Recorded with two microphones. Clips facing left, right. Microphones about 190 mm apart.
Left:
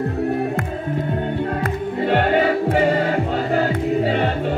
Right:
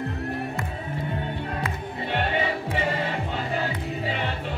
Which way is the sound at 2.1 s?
50° left (ahead or behind).